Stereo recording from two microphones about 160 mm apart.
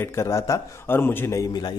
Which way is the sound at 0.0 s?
15° left (ahead or behind).